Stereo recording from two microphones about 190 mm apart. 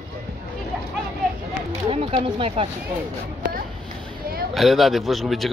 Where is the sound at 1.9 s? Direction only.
30° right (ahead or behind).